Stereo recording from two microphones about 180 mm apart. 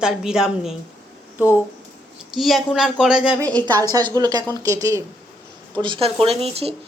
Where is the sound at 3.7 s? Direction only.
20° right (ahead or behind).